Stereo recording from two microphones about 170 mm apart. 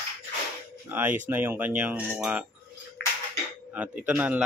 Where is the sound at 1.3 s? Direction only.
10° right (ahead or behind).